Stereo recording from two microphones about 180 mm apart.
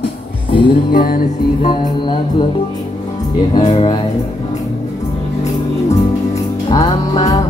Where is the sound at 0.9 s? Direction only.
50° left (ahead or behind).